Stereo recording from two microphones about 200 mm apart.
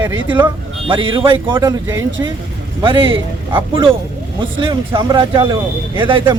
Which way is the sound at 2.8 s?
25° right (ahead or behind).